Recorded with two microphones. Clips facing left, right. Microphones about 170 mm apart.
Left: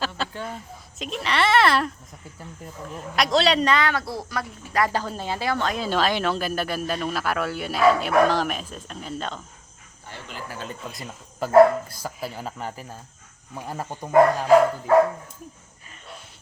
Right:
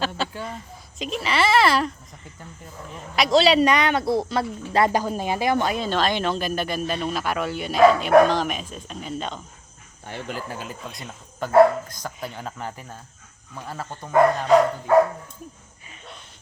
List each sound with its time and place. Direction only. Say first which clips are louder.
0.0 s speech: right 2 dB; centre (ahead or behind)
3.7 s speech: right 3 dB; 20° right (ahead or behind)
4.9 s speech: right 4 dB; 15° right (ahead or behind)
5.7 s speech: even; 5° left (ahead or behind)
10.1 s speech: right 7 dB; 55° right (ahead or behind)
10.6 s speech: left 1 dB; centre (ahead or behind)
13.5 s speech: left 2 dB; 15° left (ahead or behind)